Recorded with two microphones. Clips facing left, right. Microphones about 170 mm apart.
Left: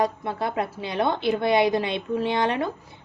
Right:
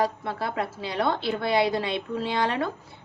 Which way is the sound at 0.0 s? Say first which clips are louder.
Left 2 dB; 20° left (ahead or behind).